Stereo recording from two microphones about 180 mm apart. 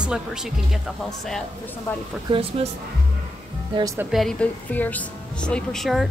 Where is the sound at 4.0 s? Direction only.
Centre (ahead or behind).